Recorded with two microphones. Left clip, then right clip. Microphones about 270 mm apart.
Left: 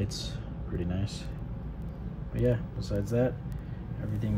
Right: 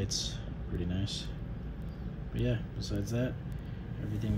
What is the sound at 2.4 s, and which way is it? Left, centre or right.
Speech, centre.